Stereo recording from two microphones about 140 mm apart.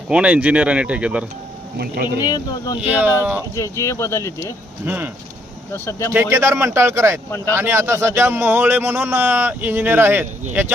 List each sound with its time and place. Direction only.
0.1 s a man's voice: 10° right (ahead or behind)
2.1 s speech: 25° left (ahead or behind)
2.8 s a man's voice: 10° right (ahead or behind)
3.5 s speech: 20° left (ahead or behind)
4.9 s a man's voice: 10° right (ahead or behind)
5.7 s speech: 20° left (ahead or behind)
6.1 s speech: 20° right (ahead or behind)
7.3 s speech: 15° left (ahead or behind)
7.5 s a man's voice: 15° right (ahead or behind)